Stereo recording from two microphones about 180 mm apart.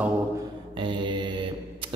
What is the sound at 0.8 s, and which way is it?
Speech, 25° right (ahead or behind).